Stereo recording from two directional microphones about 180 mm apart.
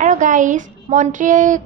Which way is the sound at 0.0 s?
45° right (ahead or behind).